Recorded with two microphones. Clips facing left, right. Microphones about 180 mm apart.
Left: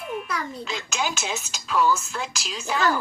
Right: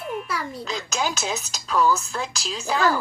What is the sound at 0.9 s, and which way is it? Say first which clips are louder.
A woman's voice: right 2 dB; 40° right (ahead or behind).